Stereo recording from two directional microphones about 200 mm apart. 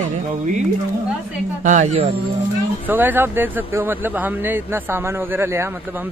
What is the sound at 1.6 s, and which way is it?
Speech, 35° right (ahead or behind).